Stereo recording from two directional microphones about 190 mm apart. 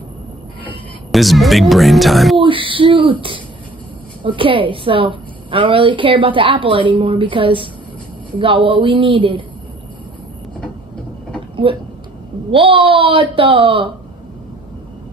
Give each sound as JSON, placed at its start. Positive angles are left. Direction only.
{"t": 0.7, "sound": "speech", "side_deg": 0}
{"t": 2.3, "sound": "a woman's voice", "side_deg": -25}
{"t": 11.6, "sound": "a woman's voice", "side_deg": -25}